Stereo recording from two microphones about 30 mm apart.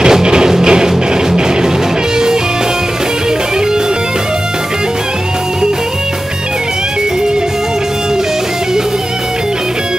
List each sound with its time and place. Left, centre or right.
0.0 s music: right